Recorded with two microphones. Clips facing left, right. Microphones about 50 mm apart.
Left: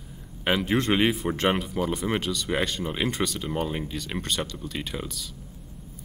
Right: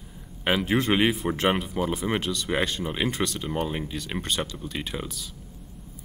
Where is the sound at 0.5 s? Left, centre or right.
Centre.